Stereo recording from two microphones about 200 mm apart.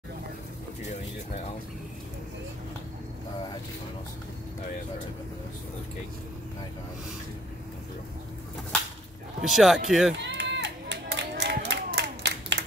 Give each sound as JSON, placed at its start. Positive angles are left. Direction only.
{"t": 9.4, "sound": "speech", "side_deg": 0}
{"t": 10.1, "sound": "run", "side_deg": -60}